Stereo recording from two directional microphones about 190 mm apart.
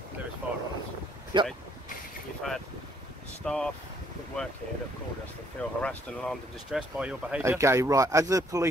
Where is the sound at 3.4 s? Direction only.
5° left (ahead or behind).